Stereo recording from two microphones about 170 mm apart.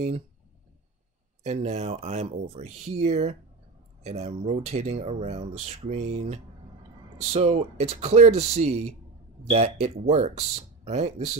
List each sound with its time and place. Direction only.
1.4 s speech: 40° right (ahead or behind)